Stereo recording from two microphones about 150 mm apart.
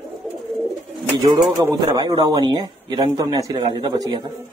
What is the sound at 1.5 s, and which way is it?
Speech, 25° right (ahead or behind).